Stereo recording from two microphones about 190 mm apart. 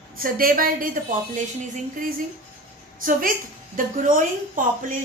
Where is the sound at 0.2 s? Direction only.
50° right (ahead or behind).